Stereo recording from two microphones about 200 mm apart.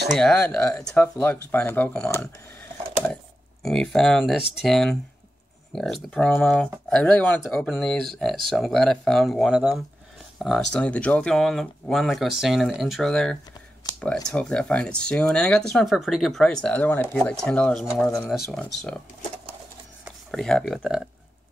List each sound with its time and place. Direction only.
0.2 s speech: 5° left (ahead or behind)
3.6 s speech: centre (ahead or behind)
20.1 s speech: centre (ahead or behind)